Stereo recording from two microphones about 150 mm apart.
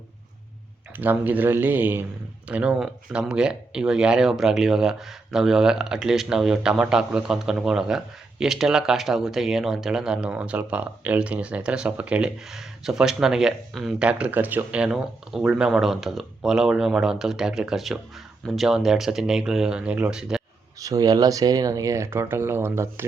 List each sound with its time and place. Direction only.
0.9 s speech: 10° right (ahead or behind)
20.7 s speech: 25° right (ahead or behind)